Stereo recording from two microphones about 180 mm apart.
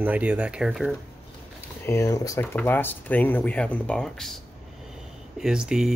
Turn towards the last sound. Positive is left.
turn(degrees=-5)  # may be behind; listen again after turning